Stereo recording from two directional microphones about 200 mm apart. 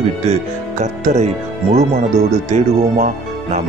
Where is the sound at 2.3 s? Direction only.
35° right (ahead or behind).